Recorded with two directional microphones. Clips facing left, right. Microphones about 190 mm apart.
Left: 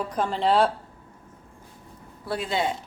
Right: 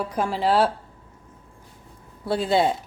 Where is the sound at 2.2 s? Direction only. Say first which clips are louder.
Right 6 dB; 30° right (ahead or behind).